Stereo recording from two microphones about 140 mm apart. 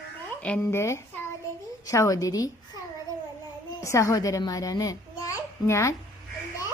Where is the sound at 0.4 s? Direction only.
15° left (ahead or behind).